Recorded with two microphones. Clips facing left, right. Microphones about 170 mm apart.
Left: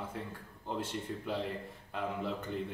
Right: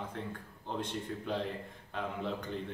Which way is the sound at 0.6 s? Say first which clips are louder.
Even; 5° left (ahead or behind).